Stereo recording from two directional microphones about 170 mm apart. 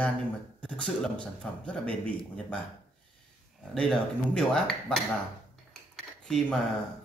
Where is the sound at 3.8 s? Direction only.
5° left (ahead or behind).